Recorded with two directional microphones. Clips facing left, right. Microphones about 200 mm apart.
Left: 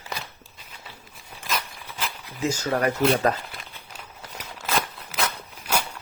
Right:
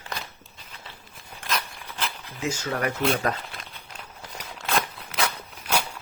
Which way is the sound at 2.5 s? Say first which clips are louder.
Left 4 dB; 35° left (ahead or behind).